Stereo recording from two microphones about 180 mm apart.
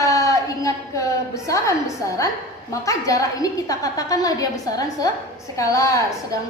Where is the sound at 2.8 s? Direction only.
20° left (ahead or behind).